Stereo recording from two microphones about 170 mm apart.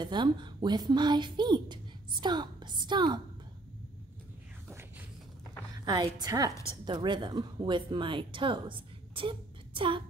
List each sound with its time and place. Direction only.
0.0 s a woman's voice: 25° right (ahead or behind)
5.9 s a woman's voice: 25° right (ahead or behind)